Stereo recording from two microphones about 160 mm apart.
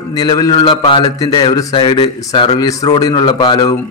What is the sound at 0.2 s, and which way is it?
A man's voice, 25° left (ahead or behind).